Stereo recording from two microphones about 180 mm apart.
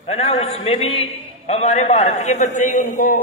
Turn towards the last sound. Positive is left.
turn(degrees=50)  # may be behind; listen again after turning